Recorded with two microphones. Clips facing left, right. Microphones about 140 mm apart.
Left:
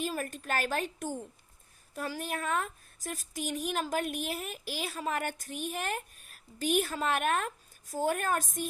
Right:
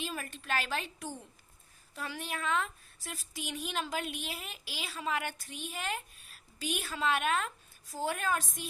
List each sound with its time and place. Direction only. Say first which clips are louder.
0.0 s a woman's voice: left 5 dB; 45° left (ahead or behind)